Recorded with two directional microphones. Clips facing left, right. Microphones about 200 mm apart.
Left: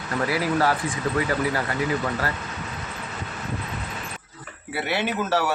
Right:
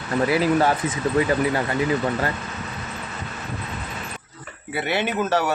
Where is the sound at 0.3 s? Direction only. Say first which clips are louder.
Right 3 dB; 25° right (ahead or behind).